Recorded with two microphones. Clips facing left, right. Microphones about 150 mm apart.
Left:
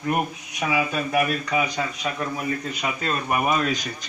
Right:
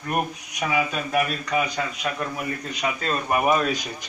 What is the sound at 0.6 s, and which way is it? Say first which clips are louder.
A man's voice: left 1 dB; 10° left (ahead or behind).